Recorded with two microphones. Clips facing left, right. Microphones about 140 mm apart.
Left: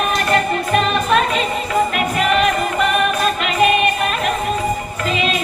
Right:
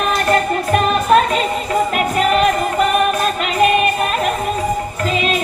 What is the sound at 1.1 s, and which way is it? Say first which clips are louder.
Music: right 5 dB; 45° right (ahead or behind).